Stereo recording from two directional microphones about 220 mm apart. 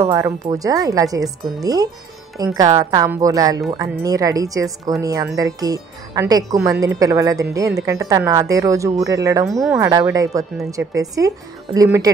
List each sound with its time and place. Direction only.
0.0 s speech: 15° right (ahead or behind)
9.5 s speech: centre (ahead or behind)
9.8 s speech: 15° right (ahead or behind)